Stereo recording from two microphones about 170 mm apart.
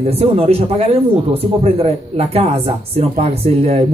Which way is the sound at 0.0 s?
35° right (ahead or behind).